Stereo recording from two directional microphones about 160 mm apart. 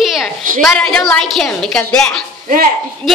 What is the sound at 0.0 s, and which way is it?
A woman's voice, centre (ahead or behind).